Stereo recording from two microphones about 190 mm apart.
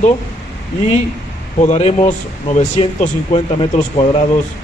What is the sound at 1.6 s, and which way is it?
Speech, 35° left (ahead or behind).